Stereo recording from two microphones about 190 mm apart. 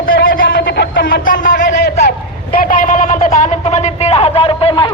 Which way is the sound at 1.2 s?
45° left (ahead or behind).